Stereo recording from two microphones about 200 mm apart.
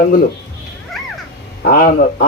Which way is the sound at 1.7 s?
45° left (ahead or behind).